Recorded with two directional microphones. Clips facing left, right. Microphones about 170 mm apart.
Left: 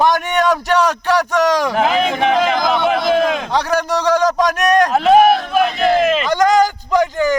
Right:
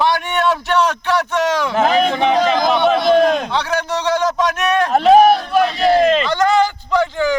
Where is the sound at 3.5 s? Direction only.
40° left (ahead or behind).